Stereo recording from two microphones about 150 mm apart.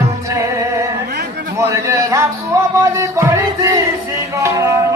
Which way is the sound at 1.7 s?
20° right (ahead or behind).